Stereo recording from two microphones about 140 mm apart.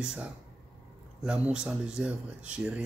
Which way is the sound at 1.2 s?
5° right (ahead or behind).